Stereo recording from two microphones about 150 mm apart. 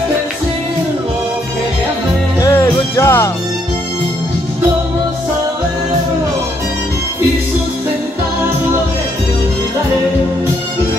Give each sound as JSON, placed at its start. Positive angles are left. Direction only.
{"t": 2.4, "sound": "music", "side_deg": 15}